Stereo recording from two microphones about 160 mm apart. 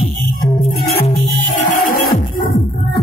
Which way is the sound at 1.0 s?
50° left (ahead or behind).